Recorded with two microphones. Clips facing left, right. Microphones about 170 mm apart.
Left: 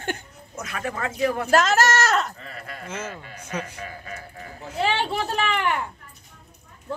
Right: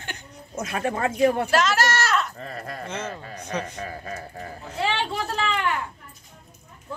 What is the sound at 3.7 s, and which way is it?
Speech, 35° right (ahead or behind).